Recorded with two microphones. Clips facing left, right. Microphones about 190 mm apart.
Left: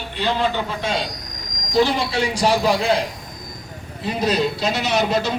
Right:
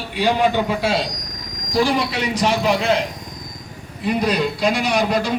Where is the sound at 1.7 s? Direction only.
25° left (ahead or behind).